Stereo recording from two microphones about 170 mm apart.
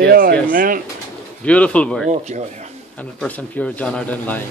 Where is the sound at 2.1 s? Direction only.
45° right (ahead or behind).